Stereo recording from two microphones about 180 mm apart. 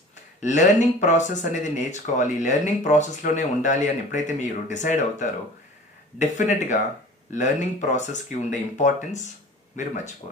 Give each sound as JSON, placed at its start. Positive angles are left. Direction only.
{"t": 0.4, "sound": "speech", "side_deg": 40}